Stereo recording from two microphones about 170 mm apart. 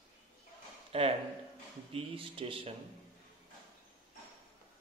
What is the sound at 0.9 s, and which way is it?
Speech, 35° right (ahead or behind).